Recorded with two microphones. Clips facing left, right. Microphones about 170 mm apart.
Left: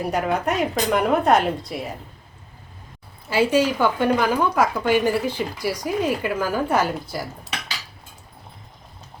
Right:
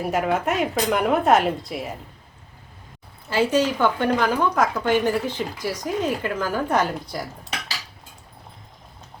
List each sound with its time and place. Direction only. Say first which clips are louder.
0.0 s speech: even; centre (ahead or behind)
3.2 s a woman's voice: left 1 dB; 10° left (ahead or behind)